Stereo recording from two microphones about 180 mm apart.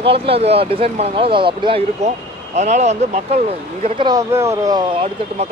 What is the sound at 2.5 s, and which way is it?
Speech, 40° right (ahead or behind).